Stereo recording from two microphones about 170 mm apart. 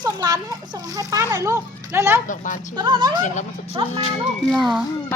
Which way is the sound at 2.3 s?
50° left (ahead or behind).